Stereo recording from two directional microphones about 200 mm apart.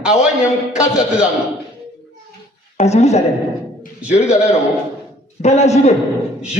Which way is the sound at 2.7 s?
35° left (ahead or behind).